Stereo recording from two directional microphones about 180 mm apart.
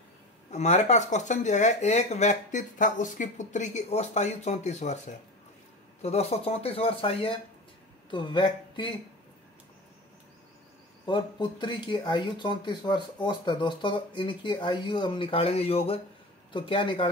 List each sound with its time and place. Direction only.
0.5 s speech: 40° left (ahead or behind)
11.1 s speech: 25° left (ahead or behind)